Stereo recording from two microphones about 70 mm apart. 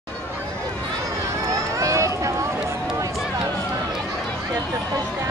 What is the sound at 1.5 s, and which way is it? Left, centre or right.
Run, right.